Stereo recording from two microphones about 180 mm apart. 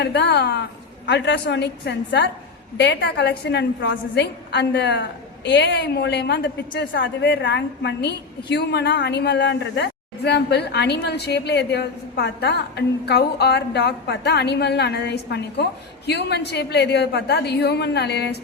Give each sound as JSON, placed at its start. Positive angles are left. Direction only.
{"t": 0.0, "sound": "a woman's voice", "side_deg": 70}